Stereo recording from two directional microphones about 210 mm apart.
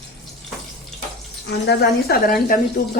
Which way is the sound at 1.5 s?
50° left (ahead or behind).